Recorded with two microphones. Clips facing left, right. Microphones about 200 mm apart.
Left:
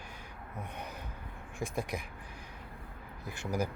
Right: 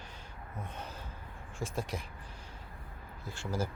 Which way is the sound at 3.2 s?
15° left (ahead or behind).